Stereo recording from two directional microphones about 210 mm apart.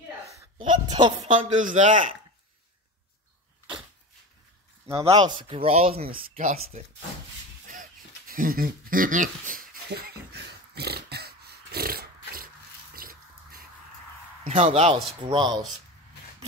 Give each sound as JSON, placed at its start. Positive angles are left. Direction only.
{"t": 0.6, "sound": "a sound", "side_deg": -20}
{"t": 1.2, "sound": "speech", "side_deg": -35}
{"t": 5.0, "sound": "speech", "side_deg": -20}
{"t": 8.3, "sound": "a sound", "side_deg": -45}
{"t": 12.9, "sound": "drip", "side_deg": -45}
{"t": 14.6, "sound": "speech", "side_deg": -30}